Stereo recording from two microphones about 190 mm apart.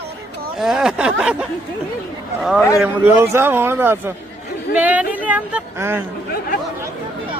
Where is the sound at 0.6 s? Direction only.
Centre (ahead or behind).